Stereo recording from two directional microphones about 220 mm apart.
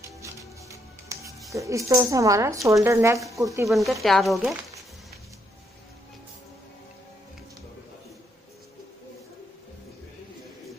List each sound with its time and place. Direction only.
0.2 s music: 15° right (ahead or behind)
1.5 s speech: 15° right (ahead or behind)
3.6 s speech: centre (ahead or behind)